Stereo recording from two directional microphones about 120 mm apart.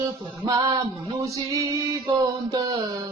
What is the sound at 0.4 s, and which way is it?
Speech, 35° right (ahead or behind).